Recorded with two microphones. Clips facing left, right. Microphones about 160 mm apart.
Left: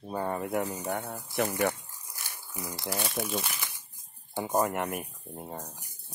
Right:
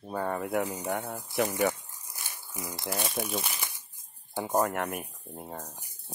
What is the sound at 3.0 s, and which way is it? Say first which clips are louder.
Speech: even; 20° right (ahead or behind).